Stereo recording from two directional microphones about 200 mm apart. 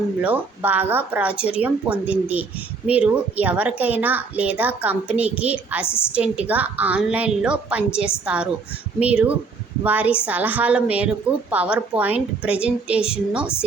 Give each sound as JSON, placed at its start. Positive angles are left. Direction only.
{"t": 0.2, "sound": "speech", "side_deg": -10}